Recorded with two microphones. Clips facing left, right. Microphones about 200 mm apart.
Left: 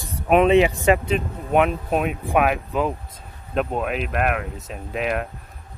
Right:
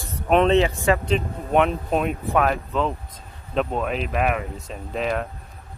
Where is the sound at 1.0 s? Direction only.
5° left (ahead or behind).